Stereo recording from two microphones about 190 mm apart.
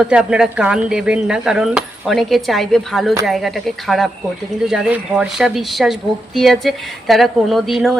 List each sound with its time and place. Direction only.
0.0 s speech: 5° right (ahead or behind)